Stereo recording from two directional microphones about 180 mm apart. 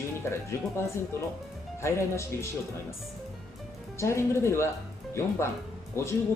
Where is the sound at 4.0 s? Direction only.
15° left (ahead or behind).